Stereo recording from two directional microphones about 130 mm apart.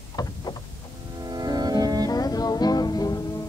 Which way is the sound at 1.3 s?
30° right (ahead or behind).